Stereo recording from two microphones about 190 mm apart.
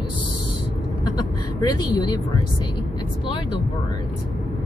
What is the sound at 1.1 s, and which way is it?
Speech, 20° left (ahead or behind).